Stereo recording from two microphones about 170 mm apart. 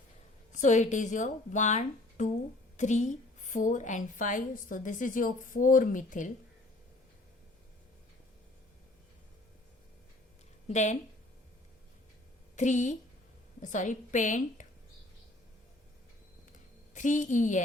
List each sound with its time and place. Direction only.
0.5 s a woman's voice: 45° left (ahead or behind)
10.7 s a woman's voice: 45° left (ahead or behind)
12.5 s a woman's voice: 45° left (ahead or behind)
16.9 s a woman's voice: 45° left (ahead or behind)